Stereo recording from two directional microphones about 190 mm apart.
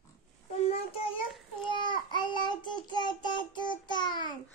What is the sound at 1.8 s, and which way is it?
Child singing, 25° left (ahead or behind).